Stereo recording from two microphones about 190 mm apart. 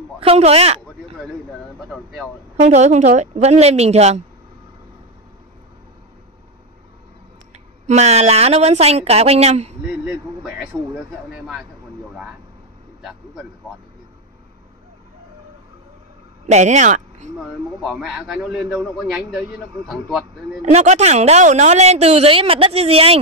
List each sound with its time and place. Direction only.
0.2 s a woman's voice: 30° right (ahead or behind)
1.8 s a man's voice: centre (ahead or behind)
2.6 s a woman's voice: 35° right (ahead or behind)
7.8 s a woman's voice: 35° right (ahead or behind)
11.3 s a man's voice: 5° right (ahead or behind)
13.0 s a man's voice: centre (ahead or behind)
16.4 s speech: 40° right (ahead or behind)
17.4 s a man's voice: centre (ahead or behind)
20.6 s a woman's voice: 35° right (ahead or behind)